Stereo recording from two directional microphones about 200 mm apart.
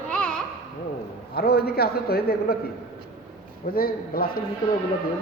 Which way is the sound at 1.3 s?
50° left (ahead or behind).